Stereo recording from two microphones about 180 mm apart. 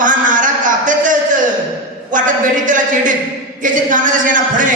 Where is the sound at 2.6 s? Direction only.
45° right (ahead or behind).